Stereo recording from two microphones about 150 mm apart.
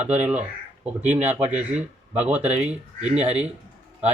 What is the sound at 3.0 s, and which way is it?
Speech, 45° right (ahead or behind).